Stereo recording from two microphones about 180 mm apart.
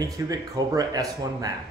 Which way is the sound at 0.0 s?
20° right (ahead or behind).